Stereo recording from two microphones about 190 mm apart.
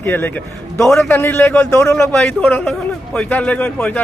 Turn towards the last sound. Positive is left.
turn(degrees=10)  # may be behind; listen again after turning